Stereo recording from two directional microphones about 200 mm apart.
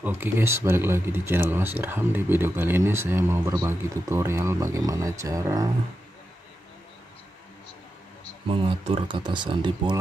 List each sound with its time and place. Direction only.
0.0 s speech: 10° right (ahead or behind)
8.5 s speech: 30° right (ahead or behind)